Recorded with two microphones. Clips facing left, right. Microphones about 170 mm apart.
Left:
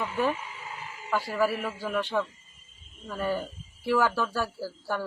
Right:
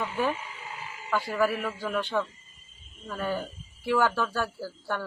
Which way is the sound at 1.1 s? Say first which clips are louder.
Even; 5° left (ahead or behind).